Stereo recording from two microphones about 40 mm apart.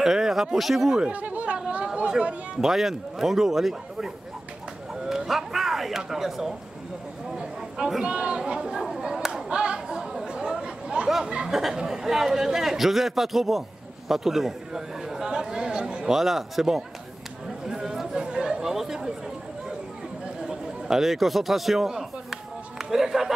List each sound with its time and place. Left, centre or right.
0.0 s speech: centre
1.1 s chatter: right
2.0 s speech: right
2.6 s a man's voice: centre
5.0 s a sound: centre
8.0 s speech: right
8.8 s chop: centre
9.3 s chatter: right
11.2 s speech: right
11.7 s a man's voice: centre
16.1 s a man's voice: centre
17.6 s chatter: centre
20.4 s a man's voice: centre